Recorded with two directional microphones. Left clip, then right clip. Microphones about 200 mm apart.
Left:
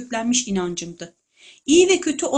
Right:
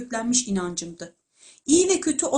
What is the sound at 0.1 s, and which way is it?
Speech, 30° left (ahead or behind).